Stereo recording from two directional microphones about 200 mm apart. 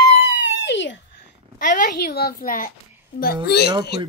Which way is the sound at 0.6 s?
65° left (ahead or behind).